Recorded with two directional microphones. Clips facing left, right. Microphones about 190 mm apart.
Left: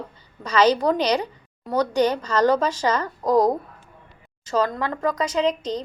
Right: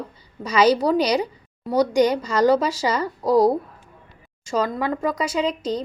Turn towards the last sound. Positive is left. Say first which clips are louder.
# left 1 dB
turn(degrees=-10)  # may be behind; listen again after turning